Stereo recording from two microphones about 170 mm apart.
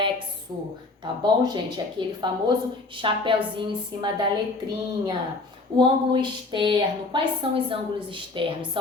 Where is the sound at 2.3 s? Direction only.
25° right (ahead or behind).